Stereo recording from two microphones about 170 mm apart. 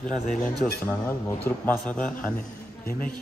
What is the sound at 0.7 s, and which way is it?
Speech, 15° left (ahead or behind).